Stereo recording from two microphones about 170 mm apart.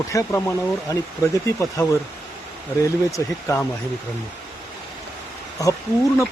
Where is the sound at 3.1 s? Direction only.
15° left (ahead or behind).